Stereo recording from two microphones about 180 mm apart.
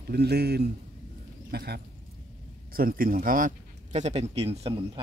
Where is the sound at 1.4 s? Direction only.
60° right (ahead or behind).